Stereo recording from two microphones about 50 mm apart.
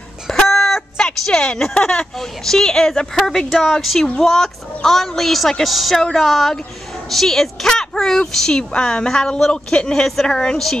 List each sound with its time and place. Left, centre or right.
0.3 s chicken: centre
0.9 s a woman's voice: centre